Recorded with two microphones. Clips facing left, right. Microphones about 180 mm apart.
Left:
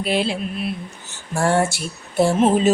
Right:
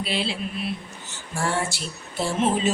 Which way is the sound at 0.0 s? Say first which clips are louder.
Left 6 dB; 50° left (ahead or behind).